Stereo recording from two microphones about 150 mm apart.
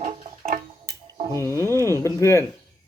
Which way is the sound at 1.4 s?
15° left (ahead or behind).